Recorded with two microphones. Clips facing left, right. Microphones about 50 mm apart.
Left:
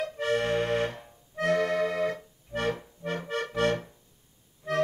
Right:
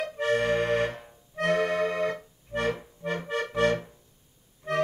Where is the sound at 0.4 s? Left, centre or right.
Right.